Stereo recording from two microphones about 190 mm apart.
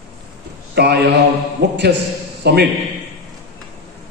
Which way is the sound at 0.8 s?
65° right (ahead or behind).